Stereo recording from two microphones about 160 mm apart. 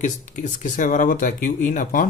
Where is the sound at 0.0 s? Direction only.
50° left (ahead or behind).